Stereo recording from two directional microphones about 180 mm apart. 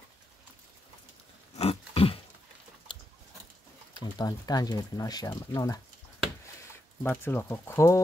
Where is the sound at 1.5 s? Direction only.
35° left (ahead or behind).